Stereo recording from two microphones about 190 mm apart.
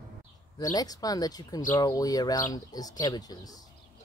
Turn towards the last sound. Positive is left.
turn(degrees=20)  # may be behind; listen again after turning